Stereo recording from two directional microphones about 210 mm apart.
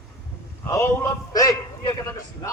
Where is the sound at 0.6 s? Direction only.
15° left (ahead or behind).